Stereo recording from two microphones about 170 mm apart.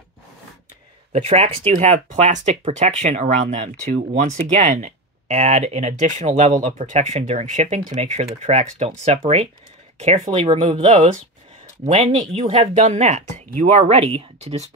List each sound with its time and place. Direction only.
1.1 s speech: 35° right (ahead or behind)